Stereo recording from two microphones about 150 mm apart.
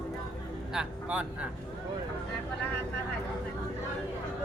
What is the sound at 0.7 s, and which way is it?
Speech, 10° right (ahead or behind).